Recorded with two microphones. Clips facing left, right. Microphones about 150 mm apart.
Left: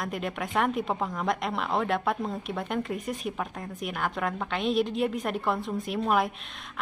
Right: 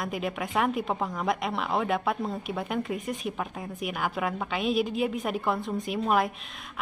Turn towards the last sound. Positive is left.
turn(degrees=0)  # may be behind; listen again after turning